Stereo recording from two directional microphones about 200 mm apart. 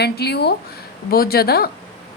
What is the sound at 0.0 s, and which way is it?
A woman's voice, 55° left (ahead or behind).